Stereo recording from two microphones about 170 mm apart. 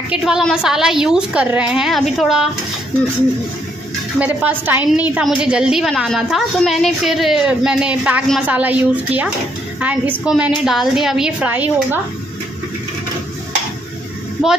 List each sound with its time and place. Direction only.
0.1 s a woman's voice: 5° right (ahead or behind)
4.2 s a woman's voice: 10° right (ahead or behind)